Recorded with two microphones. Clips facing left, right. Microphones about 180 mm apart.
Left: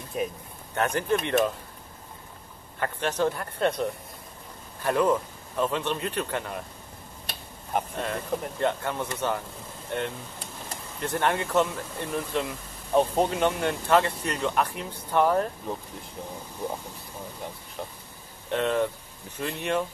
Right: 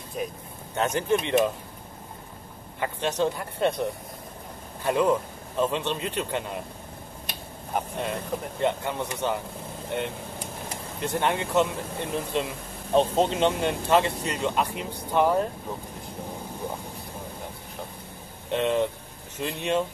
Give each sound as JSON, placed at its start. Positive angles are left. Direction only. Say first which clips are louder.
{"t": 0.2, "sound": "speech", "louder": "left 2 dB", "side_deg": 5}
{"t": 0.7, "sound": "speech", "louder": "right 1 dB", "side_deg": -20}
{"t": 2.8, "sound": "speech", "louder": "even", "side_deg": -15}
{"t": 4.8, "sound": "speech", "louder": "right 1 dB", "side_deg": -20}
{"t": 8.0, "sound": "speech", "louder": "even", "side_deg": -15}
{"t": 11.0, "sound": "speech", "louder": "even", "side_deg": -15}
{"t": 18.5, "sound": "speech", "louder": "right 1 dB", "side_deg": -20}